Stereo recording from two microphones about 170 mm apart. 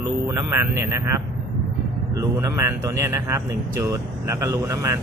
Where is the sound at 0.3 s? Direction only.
15° right (ahead or behind).